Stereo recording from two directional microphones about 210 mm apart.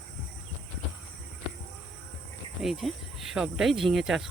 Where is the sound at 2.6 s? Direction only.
Centre (ahead or behind).